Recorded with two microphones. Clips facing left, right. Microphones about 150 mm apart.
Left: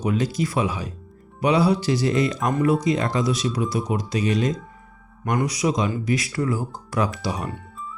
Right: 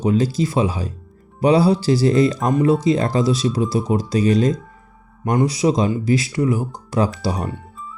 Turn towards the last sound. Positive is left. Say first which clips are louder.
# right 4 dB
turn(degrees=-30)  # may be behind; listen again after turning